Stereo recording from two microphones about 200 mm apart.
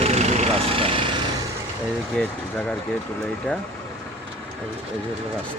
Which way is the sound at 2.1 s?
5° left (ahead or behind).